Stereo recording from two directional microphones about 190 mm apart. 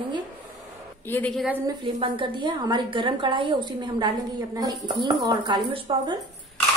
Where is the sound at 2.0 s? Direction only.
25° right (ahead or behind).